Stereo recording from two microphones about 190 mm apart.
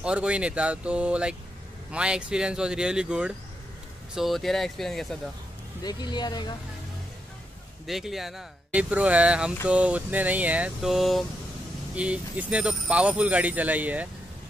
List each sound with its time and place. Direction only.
0.0 s speech: 5° right (ahead or behind)
5.9 s speech: 20° left (ahead or behind)
7.8 s speech: centre (ahead or behind)